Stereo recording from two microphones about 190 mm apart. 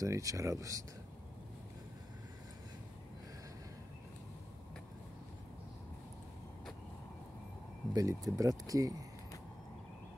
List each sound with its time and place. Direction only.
0.0 s speech: 15° right (ahead or behind)
7.9 s speech: 20° right (ahead or behind)